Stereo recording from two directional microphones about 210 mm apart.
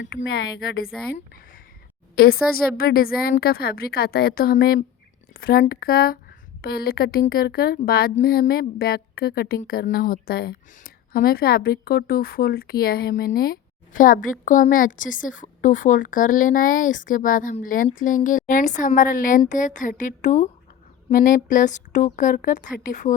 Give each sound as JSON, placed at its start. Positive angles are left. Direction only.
{"t": 2.1, "sound": "a woman's voice", "side_deg": 45}